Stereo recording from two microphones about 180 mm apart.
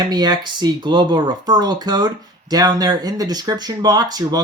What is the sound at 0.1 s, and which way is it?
Speech, 25° right (ahead or behind).